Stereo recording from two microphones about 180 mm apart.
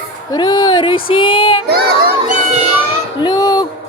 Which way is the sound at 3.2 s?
20° left (ahead or behind).